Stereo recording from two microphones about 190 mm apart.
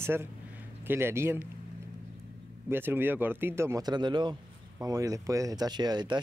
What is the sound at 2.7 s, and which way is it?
Speech, 10° right (ahead or behind).